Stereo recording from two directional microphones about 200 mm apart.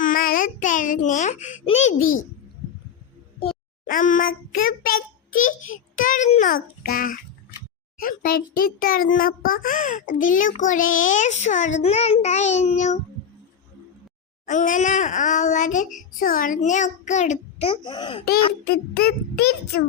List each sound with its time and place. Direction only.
0.0 s a child's voice: 45° left (ahead or behind)
3.8 s a child's voice: 40° left (ahead or behind)
14.4 s a child's voice: 40° left (ahead or behind); by 18.2 s 20° left (ahead or behind)
18.6 s a child's voice: 50° left (ahead or behind)